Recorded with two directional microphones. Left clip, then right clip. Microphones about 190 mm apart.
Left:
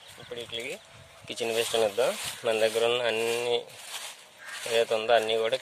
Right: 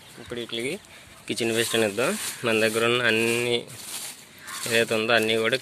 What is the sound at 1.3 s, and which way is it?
Speech, 20° left (ahead or behind).